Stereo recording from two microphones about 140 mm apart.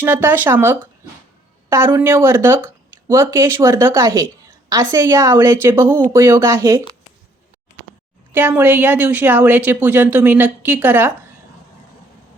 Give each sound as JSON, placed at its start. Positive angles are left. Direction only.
{"t": 0.0, "sound": "speech", "side_deg": -15}
{"t": 8.3, "sound": "speech", "side_deg": -15}